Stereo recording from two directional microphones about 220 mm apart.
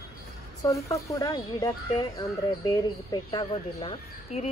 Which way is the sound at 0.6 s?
15° left (ahead or behind).